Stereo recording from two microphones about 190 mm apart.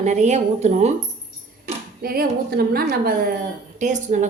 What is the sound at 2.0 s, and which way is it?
A woman's voice, 55° right (ahead or behind).